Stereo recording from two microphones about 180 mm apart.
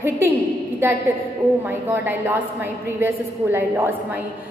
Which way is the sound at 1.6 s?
10° right (ahead or behind).